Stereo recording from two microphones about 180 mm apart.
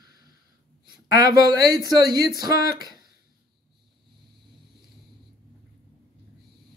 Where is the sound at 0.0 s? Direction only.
20° right (ahead or behind).